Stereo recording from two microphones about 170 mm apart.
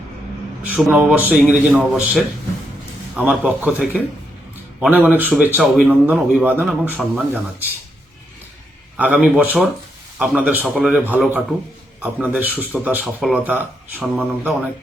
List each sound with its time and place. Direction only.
0.6 s a man's voice: 5° right (ahead or behind)
3.2 s speech: 10° right (ahead or behind)
9.0 s speech: 10° right (ahead or behind)